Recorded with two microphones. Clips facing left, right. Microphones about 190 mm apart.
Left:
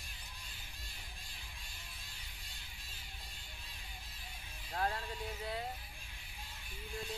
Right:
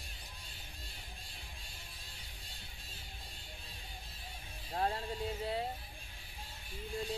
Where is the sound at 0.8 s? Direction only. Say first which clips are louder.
Right 3 dB; 30° right (ahead or behind).